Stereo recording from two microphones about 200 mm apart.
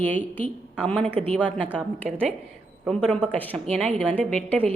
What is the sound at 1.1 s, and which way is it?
Speech, 30° right (ahead or behind).